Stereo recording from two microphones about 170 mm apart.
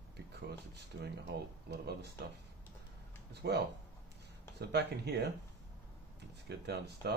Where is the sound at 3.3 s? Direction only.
80° right.